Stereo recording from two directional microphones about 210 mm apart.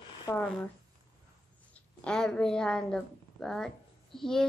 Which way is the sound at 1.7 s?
5° left (ahead or behind).